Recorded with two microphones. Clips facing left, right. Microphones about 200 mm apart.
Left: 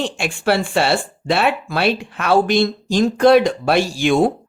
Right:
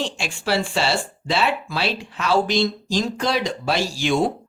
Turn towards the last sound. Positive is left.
turn(degrees=55)  # may be behind; listen again after turning